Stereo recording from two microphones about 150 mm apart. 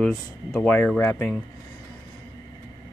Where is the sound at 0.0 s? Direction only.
5° left (ahead or behind).